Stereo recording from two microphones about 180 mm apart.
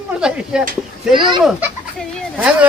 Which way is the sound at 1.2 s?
25° right (ahead or behind).